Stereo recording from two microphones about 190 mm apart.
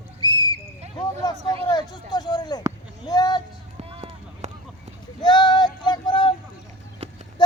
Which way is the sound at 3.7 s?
30° right (ahead or behind).